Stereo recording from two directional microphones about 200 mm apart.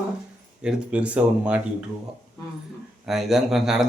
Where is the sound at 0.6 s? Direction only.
5° right (ahead or behind).